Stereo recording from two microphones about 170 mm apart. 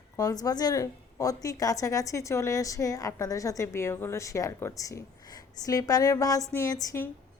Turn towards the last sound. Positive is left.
turn(degrees=20)  # may be behind; listen again after turning